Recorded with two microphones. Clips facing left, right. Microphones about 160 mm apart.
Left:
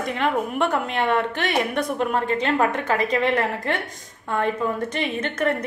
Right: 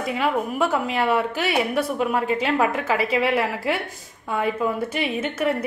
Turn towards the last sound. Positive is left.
turn(degrees=-5)  # may be behind; listen again after turning